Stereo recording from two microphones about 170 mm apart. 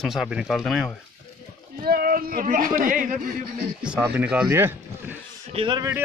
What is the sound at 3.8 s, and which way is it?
Speech, 5° right (ahead or behind).